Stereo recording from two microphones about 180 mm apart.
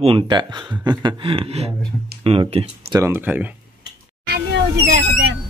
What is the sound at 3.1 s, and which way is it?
Speech, 10° right (ahead or behind).